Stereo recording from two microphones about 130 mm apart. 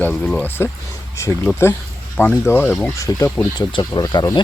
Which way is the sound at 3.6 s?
35° left (ahead or behind).